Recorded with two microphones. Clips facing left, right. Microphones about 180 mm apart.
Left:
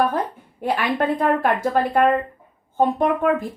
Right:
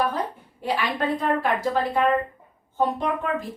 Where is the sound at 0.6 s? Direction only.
55° left (ahead or behind).